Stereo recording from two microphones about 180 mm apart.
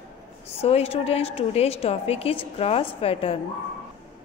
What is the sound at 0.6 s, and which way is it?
A woman's voice, 35° left (ahead or behind).